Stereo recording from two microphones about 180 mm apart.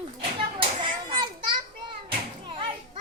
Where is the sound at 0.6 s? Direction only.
30° right (ahead or behind).